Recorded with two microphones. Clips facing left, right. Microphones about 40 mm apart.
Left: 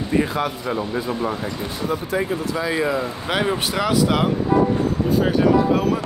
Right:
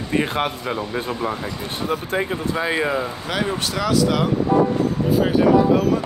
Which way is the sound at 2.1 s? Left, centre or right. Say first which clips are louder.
Even; right.